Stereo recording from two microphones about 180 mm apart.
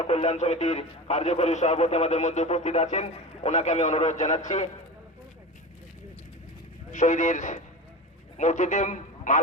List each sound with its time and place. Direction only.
0.0 s a man's voice: 35° left (ahead or behind)
6.9 s a man's voice: 45° left (ahead or behind)